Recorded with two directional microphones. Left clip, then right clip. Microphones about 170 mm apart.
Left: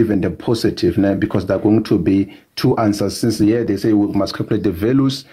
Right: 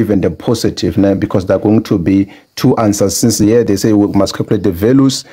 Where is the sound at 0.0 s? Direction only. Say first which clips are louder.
Right 4 dB; 40° right (ahead or behind).